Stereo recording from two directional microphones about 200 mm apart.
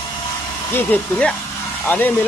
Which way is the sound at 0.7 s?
10° left (ahead or behind).